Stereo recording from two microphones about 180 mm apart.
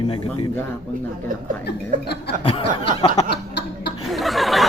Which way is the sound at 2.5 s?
30° left (ahead or behind).